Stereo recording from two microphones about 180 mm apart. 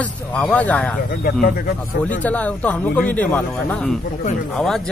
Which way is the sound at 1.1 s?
55° left (ahead or behind).